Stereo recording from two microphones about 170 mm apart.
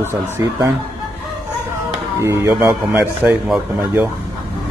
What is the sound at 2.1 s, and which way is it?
Speech, 15° right (ahead or behind).